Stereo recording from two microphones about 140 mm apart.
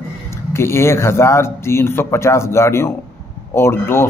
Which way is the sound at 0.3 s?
20° left (ahead or behind).